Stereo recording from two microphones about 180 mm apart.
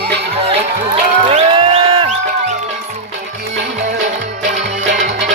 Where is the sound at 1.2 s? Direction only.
35° right (ahead or behind).